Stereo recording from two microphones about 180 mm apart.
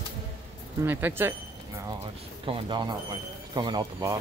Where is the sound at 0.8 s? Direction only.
10° right (ahead or behind).